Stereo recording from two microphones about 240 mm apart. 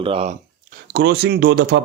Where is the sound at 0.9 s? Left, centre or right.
Right.